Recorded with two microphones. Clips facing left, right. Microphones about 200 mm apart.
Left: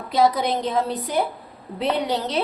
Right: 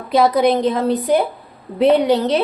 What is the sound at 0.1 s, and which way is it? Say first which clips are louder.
Speech: right 6 dB; 65° right (ahead or behind).